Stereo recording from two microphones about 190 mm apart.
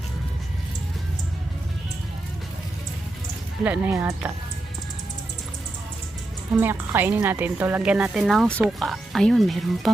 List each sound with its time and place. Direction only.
3.6 s a woman's voice: 10° right (ahead or behind)
6.6 s a woman's voice: 10° right (ahead or behind)